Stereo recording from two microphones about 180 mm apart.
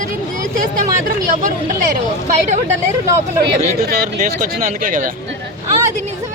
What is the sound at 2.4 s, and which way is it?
Speech, 40° right (ahead or behind).